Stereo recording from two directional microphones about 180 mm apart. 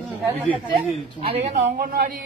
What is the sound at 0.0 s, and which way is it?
Speech, centre (ahead or behind).